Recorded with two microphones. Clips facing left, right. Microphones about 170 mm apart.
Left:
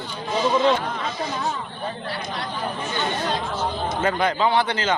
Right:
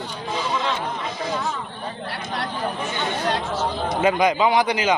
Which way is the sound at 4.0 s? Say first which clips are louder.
Right 3 dB; 15° right (ahead or behind).